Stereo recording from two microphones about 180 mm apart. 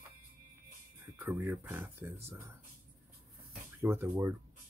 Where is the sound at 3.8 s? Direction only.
15° right (ahead or behind).